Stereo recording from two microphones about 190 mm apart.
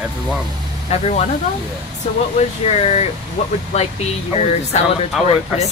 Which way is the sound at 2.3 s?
35° left (ahead or behind).